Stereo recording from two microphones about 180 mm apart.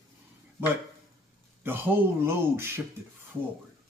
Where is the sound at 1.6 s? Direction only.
10° right (ahead or behind).